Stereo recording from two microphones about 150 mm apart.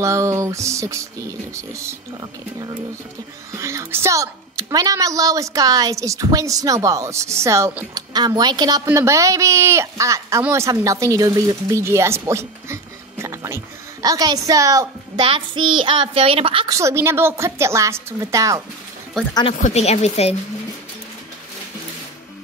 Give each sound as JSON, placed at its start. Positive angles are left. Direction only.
{"t": 0.0, "sound": "a woman's voice", "side_deg": -20}
{"t": 3.5, "sound": "a woman's voice", "side_deg": -20}
{"t": 15.2, "sound": "a child's voice", "side_deg": -35}
{"t": 16.6, "sound": "a woman's voice", "side_deg": -20}
{"t": 19.2, "sound": "speech", "side_deg": 5}
{"t": 19.5, "sound": "a woman's voice", "side_deg": 50}